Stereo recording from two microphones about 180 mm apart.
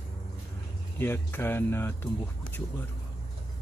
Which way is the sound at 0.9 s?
10° left (ahead or behind).